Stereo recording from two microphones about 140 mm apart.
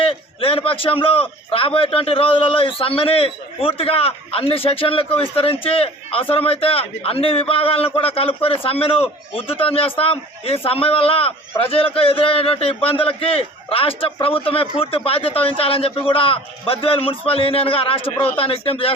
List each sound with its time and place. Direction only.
0.0 s a man's voice: 40° left (ahead or behind)